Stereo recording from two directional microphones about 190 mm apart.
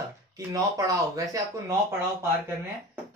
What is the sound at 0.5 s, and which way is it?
Speech, 20° right (ahead or behind).